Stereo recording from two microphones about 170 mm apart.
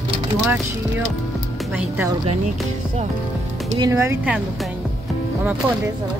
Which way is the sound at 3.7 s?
20° right (ahead or behind).